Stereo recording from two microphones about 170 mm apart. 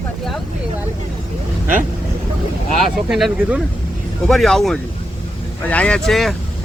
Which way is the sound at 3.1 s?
5° right (ahead or behind).